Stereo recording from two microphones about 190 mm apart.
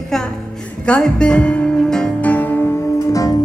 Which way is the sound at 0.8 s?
5° left (ahead or behind).